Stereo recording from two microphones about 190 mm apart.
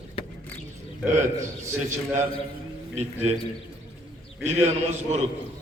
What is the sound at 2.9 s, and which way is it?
Speech, 35° right (ahead or behind).